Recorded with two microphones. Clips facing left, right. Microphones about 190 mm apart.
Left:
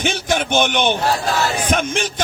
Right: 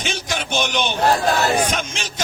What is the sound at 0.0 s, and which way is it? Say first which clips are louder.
A man's voice: left 6 dB; 55° left (ahead or behind).